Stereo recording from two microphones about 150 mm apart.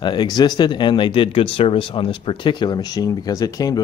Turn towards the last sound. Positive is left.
turn(degrees=25)  # may be behind; listen again after turning